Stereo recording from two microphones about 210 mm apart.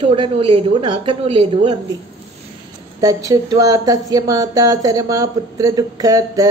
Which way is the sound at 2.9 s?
15° right (ahead or behind).